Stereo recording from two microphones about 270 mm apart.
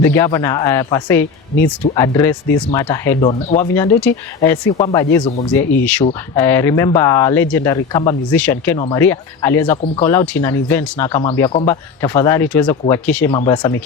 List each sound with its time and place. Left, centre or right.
0.0 s speech: centre
3.8 s speech: centre
11.2 s speech: centre
13.3 s speech: centre